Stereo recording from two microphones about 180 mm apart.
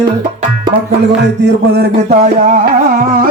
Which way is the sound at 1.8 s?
55° right (ahead or behind).